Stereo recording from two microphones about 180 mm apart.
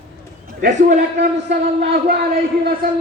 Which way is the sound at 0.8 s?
45° right (ahead or behind).